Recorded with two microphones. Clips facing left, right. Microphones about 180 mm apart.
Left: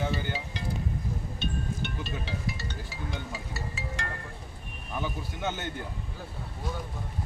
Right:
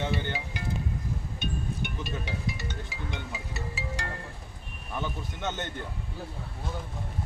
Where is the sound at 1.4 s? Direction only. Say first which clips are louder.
Even; 15° right (ahead or behind).